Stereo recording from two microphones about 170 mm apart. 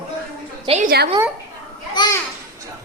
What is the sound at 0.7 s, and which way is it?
Speech, 35° right (ahead or behind).